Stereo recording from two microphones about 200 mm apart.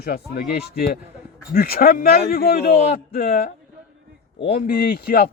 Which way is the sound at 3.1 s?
50° left (ahead or behind).